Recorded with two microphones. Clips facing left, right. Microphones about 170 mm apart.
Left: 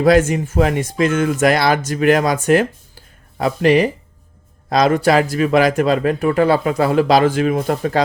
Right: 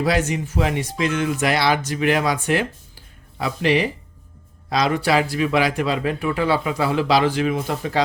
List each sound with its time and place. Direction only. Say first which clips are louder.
0.0 s speech: left 8 dB; 50° left (ahead or behind)